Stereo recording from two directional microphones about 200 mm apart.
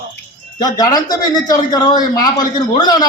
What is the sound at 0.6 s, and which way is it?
A man's voice, 20° left (ahead or behind).